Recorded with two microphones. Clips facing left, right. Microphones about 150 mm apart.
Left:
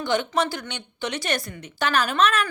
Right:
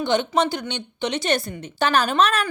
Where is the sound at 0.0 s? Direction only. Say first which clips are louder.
Right 3 dB; 20° right (ahead or behind).